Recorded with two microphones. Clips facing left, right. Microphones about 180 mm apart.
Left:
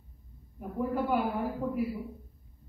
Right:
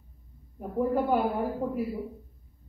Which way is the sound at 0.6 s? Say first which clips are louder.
Right 4 dB; 40° right (ahead or behind).